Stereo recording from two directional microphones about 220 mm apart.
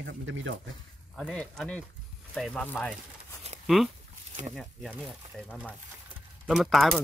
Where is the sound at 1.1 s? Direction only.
Centre (ahead or behind).